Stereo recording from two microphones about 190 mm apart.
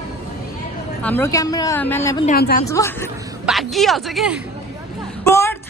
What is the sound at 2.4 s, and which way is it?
Speech, 55° left (ahead or behind).